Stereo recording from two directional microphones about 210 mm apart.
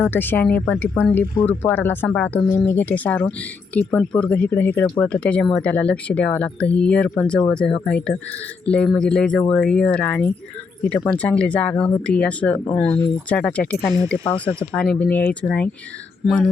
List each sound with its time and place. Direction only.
0.0 s speech: 10° left (ahead or behind)
14.3 s speech: 25° left (ahead or behind)
14.8 s speech: 5° left (ahead or behind)